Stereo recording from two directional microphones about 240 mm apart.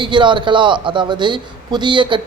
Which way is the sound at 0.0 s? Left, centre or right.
Centre.